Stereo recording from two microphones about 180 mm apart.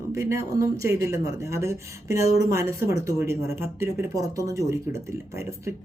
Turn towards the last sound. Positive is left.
turn(degrees=-15)  # may be behind; listen again after turning